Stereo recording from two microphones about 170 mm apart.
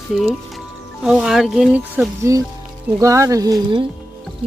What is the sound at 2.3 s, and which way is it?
Speech, 20° right (ahead or behind).